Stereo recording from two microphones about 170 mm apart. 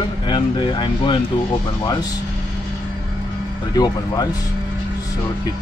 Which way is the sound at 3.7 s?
20° left (ahead or behind).